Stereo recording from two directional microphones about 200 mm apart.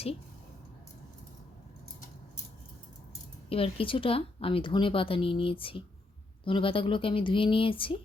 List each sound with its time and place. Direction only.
3.5 s speech: 25° left (ahead or behind)